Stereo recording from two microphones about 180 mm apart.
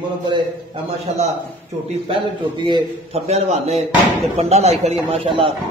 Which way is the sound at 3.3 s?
35° right (ahead or behind).